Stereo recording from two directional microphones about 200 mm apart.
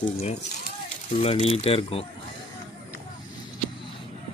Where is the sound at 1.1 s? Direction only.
30° left (ahead or behind).